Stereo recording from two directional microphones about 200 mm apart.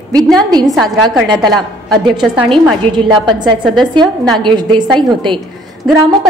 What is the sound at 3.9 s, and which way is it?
A woman's voice, 25° right (ahead or behind).